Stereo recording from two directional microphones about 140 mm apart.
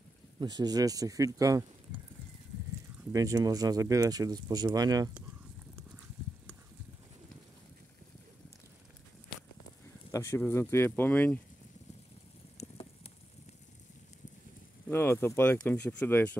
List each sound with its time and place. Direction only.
0.4 s speech: 30° right (ahead or behind)
3.1 s speech: 25° right (ahead or behind)
10.1 s speech: 20° left (ahead or behind)
12.5 s a sound: 45° left (ahead or behind)
14.9 s speech: 15° left (ahead or behind)